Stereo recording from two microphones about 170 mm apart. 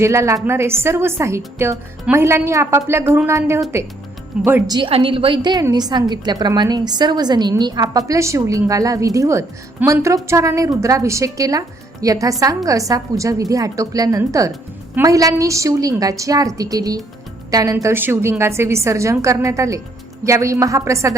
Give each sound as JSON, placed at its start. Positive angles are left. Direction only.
{"t": 0.0, "sound": "a woman's voice", "side_deg": -15}
{"t": 4.7, "sound": "a woman's voice", "side_deg": -30}